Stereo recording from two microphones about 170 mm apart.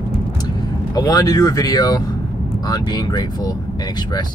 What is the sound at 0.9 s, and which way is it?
Speech, 20° left (ahead or behind).